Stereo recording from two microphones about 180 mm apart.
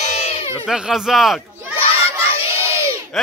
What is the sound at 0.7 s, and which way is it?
Speech, 5° right (ahead or behind).